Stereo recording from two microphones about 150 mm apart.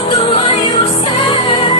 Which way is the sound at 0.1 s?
35° left (ahead or behind).